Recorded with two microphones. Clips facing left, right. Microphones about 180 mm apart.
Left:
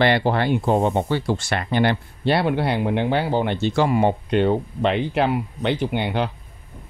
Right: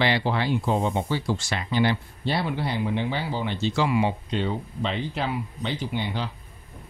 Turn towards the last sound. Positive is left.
turn(degrees=60)  # may be behind; listen again after turning